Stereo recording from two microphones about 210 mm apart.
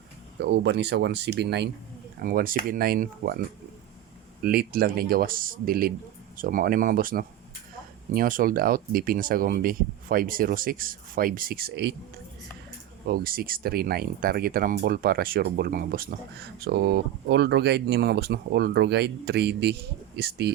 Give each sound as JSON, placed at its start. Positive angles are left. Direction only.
{"t": 0.5, "sound": "speech", "side_deg": -55}
{"t": 2.2, "sound": "speech", "side_deg": -40}
{"t": 4.4, "sound": "speech", "side_deg": -45}
{"t": 13.1, "sound": "speech", "side_deg": -45}